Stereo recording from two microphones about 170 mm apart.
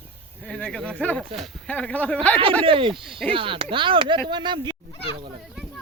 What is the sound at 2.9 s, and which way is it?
Speech, centre (ahead or behind).